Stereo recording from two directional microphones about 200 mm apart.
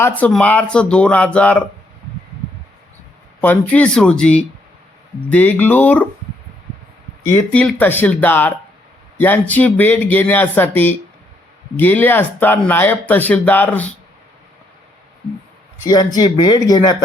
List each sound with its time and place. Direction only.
0.0 s speech: 5° left (ahead or behind)
3.4 s speech: 10° left (ahead or behind)
7.3 s speech: 10° left (ahead or behind)
15.8 s speech: 20° left (ahead or behind)